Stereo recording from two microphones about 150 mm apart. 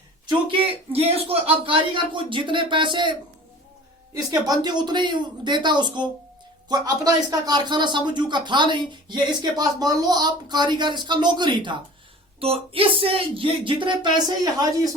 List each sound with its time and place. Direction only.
0.9 s speech: 40° right (ahead or behind); by 14.7 s 25° right (ahead or behind)